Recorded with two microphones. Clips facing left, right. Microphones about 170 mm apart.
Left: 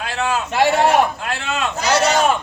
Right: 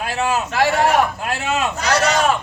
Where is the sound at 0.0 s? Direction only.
5° right (ahead or behind).